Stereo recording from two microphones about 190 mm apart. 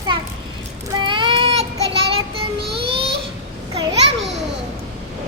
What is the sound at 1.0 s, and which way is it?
Child singing, 25° right (ahead or behind).